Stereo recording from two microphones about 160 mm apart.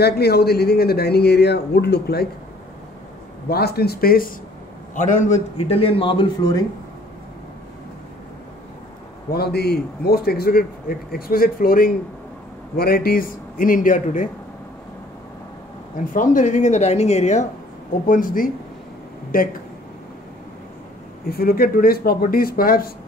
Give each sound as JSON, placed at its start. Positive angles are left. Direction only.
{"t": 0.0, "sound": "a man's voice", "side_deg": 85}
{"t": 3.4, "sound": "a man's voice", "side_deg": 80}
{"t": 4.9, "sound": "a woman's voice", "side_deg": 50}
{"t": 5.6, "sound": "speech", "side_deg": 35}
{"t": 9.3, "sound": "a man's voice", "side_deg": 80}
{"t": 16.1, "sound": "a woman's voice", "side_deg": 55}
{"t": 18.0, "sound": "a man's voice", "side_deg": 60}
{"t": 21.3, "sound": "a man's voice", "side_deg": 70}